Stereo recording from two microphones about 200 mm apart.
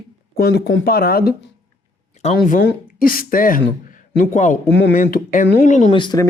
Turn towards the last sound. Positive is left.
turn(degrees=20)  # may be behind; listen again after turning